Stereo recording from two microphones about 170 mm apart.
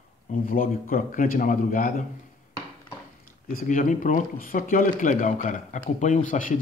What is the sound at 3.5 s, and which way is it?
Speech, 50° left (ahead or behind).